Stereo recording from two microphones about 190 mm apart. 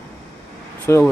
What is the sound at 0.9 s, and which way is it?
Speech, 10° left (ahead or behind).